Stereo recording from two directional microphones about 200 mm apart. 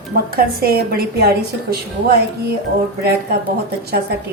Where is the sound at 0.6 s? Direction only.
50° right (ahead or behind).